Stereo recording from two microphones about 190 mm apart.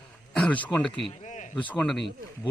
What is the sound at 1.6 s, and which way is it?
Speech, 5° left (ahead or behind).